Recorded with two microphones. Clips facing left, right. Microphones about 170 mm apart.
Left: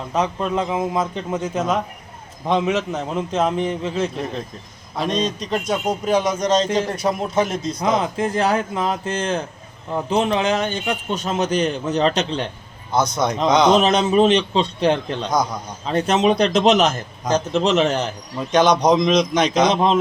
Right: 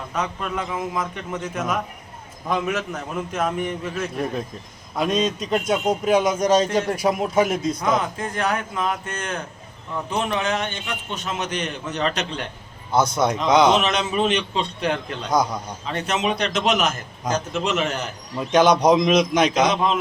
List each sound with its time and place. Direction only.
0.1 s a man's voice: 25° left (ahead or behind)
4.9 s a man's voice: 5° right (ahead or behind)
7.9 s a man's voice: 25° left (ahead or behind)
12.9 s a man's voice: 5° right (ahead or behind)
13.7 s a man's voice: 35° left (ahead or behind)
18.3 s a man's voice: 5° right (ahead or behind)
19.7 s a man's voice: 35° left (ahead or behind)